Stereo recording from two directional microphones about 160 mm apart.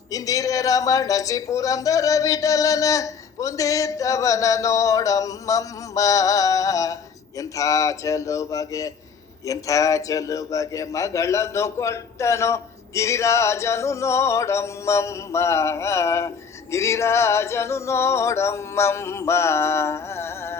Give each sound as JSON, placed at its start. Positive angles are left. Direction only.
{"t": 0.1, "sound": "a man's voice", "side_deg": 20}